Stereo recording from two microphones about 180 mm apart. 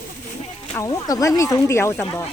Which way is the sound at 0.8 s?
20° left (ahead or behind).